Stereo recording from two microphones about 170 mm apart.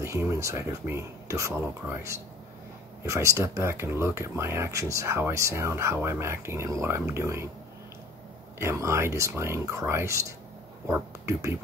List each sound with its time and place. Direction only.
0.0 s speech: 15° right (ahead or behind)
8.5 s speech: 15° right (ahead or behind)